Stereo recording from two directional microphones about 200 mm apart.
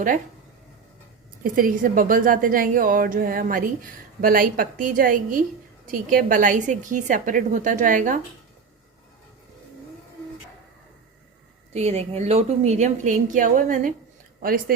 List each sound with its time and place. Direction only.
1.5 s a woman's voice: 45° right (ahead or behind)
11.7 s a woman's voice: 30° right (ahead or behind)